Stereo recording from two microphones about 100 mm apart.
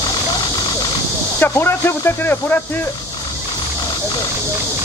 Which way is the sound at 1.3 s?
25° left (ahead or behind).